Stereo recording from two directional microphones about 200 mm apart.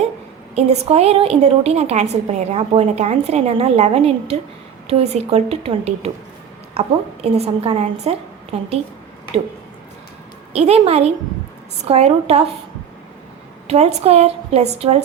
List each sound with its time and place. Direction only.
0.5 s a woman's voice: 30° right (ahead or behind)
10.5 s a woman's voice: 30° right (ahead or behind)
13.7 s a woman's voice: 30° right (ahead or behind)